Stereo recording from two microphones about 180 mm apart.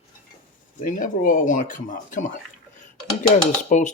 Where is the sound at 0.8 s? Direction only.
50° left (ahead or behind).